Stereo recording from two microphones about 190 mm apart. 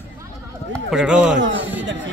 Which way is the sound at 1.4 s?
80° right.